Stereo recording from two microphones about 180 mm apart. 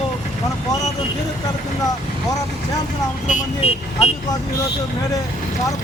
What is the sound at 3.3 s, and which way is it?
Speech, 40° left (ahead or behind).